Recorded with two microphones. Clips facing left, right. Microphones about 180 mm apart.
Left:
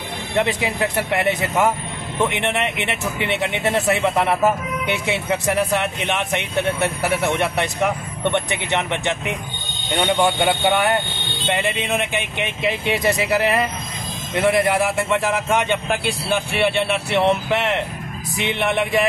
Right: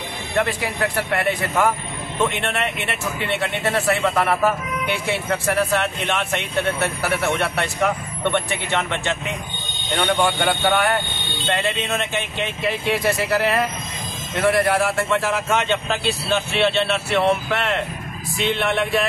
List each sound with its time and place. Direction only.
0.4 s a man's voice: 20° left (ahead or behind)